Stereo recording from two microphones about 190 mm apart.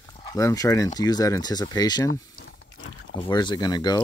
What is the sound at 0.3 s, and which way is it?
Speech, 15° left (ahead or behind).